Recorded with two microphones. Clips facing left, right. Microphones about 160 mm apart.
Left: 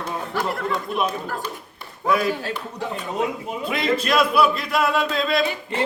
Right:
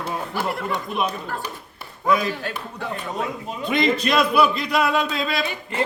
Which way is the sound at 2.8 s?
20° left (ahead or behind).